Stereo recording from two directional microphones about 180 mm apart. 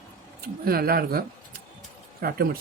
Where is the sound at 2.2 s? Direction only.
60° right (ahead or behind).